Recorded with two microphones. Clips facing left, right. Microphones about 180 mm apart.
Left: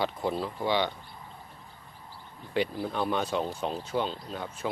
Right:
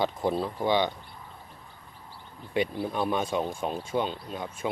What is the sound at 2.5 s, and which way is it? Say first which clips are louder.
Speech: right 1 dB; 20° right (ahead or behind).